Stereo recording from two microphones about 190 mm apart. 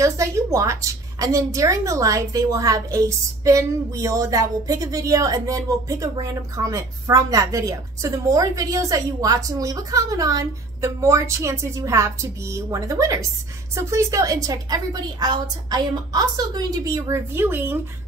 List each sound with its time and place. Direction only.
0.0 s a woman's voice: 15° right (ahead or behind)